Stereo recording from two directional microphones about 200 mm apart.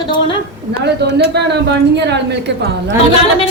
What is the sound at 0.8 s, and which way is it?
A woman's voice, 55° right (ahead or behind).